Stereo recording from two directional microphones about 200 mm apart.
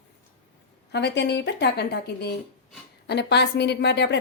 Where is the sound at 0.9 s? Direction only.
60° left (ahead or behind).